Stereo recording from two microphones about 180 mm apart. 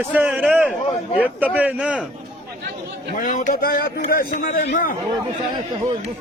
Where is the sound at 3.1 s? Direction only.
45° left (ahead or behind).